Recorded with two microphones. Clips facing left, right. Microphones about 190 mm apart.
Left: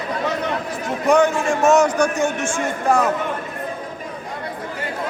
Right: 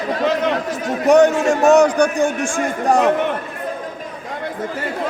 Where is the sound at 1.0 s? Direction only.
40° right (ahead or behind).